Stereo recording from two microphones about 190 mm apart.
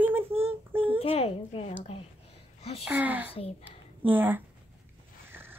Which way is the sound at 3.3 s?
30° left (ahead or behind).